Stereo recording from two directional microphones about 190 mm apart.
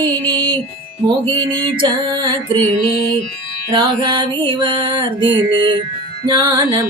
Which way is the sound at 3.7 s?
25° right (ahead or behind).